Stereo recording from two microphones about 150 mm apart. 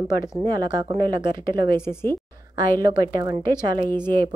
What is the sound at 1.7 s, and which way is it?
Speech, 15° left (ahead or behind).